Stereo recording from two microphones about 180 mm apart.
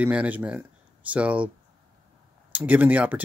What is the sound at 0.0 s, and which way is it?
Speech, 10° right (ahead or behind).